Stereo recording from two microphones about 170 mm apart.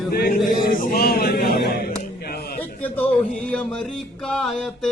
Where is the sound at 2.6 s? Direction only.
10° left (ahead or behind).